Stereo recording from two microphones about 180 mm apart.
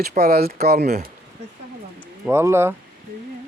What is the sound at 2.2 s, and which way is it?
Speech, 15° right (ahead or behind).